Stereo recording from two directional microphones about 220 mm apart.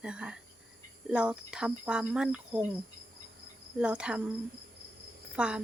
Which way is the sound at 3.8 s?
5° right (ahead or behind).